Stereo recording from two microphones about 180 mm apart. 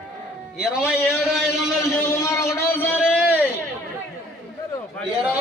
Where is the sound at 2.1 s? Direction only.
15° left (ahead or behind).